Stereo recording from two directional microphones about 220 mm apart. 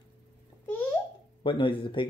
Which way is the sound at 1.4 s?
25° left (ahead or behind).